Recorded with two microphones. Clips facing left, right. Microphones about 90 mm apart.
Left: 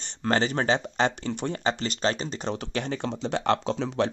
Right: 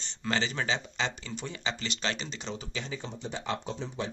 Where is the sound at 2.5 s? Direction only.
60° left (ahead or behind); by 4.1 s 90° left.